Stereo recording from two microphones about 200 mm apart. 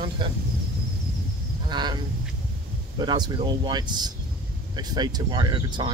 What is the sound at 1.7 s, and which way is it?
Speech, 20° right (ahead or behind).